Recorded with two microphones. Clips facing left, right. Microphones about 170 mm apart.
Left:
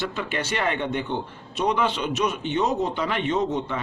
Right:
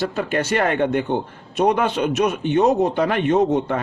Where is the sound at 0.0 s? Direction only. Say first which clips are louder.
Right 6 dB; 45° right (ahead or behind).